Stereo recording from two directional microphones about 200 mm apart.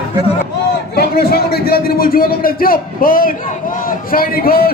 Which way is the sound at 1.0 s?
50° left (ahead or behind).